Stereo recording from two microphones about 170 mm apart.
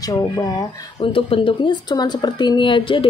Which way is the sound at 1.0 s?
30° left (ahead or behind).